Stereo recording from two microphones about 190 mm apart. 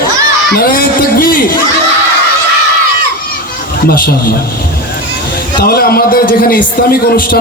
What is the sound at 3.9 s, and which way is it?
Speech, 50° left (ahead or behind).